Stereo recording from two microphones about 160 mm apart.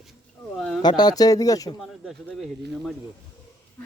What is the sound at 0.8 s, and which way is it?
Speech, 25° left (ahead or behind).